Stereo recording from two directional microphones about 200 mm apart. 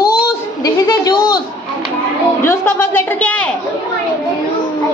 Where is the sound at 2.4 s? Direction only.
10° left (ahead or behind).